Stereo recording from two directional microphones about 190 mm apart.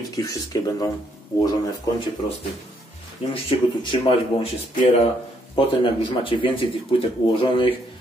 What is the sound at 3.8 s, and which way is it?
Dishes, 30° left (ahead or behind).